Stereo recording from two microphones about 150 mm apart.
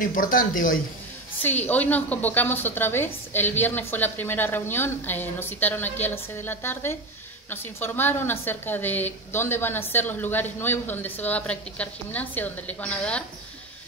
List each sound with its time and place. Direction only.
0.0 s speech: 65° left (ahead or behind)
1.4 s a woman's voice: 10° left (ahead or behind)